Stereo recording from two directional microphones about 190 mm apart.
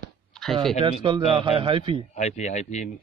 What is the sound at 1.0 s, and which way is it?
A man's voice, 25° right (ahead or behind).